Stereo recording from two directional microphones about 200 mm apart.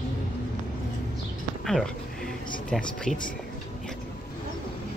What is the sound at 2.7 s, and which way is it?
Speech, 5° left (ahead or behind).